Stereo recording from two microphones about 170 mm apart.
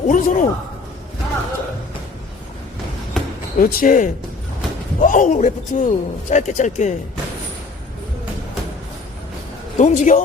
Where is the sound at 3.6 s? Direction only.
55° left (ahead or behind).